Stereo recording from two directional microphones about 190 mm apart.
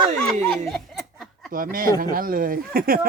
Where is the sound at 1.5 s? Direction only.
45° right (ahead or behind).